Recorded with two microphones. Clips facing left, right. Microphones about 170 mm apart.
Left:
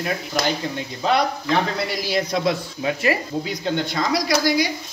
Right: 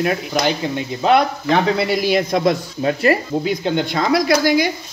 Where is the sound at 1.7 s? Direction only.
60° right (ahead or behind).